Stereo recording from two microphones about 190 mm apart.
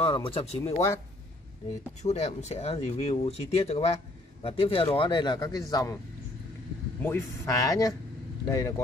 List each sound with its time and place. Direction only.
0.0 s speech: 25° left (ahead or behind)
2.0 s speech: 35° left (ahead or behind); by 5.9 s 20° left (ahead or behind)
7.0 s speech: 10° left (ahead or behind)